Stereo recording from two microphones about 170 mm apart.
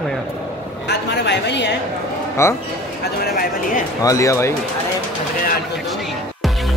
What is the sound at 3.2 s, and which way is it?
Speech, 60° left (ahead or behind).